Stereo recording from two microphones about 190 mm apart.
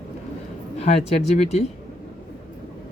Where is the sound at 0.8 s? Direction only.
35° left (ahead or behind).